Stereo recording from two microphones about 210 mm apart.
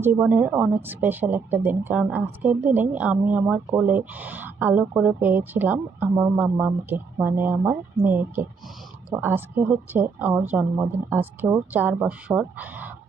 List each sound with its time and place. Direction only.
0.0 s a woman's voice: 5° right (ahead or behind)